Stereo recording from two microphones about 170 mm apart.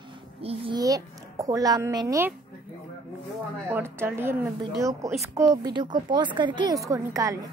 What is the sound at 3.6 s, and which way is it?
A woman's voice, 15° right (ahead or behind).